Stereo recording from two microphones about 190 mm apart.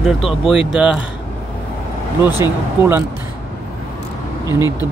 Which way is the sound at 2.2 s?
10° right (ahead or behind).